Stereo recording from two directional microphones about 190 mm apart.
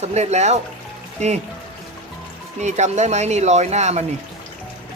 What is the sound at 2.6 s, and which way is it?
Speech, 35° right (ahead or behind).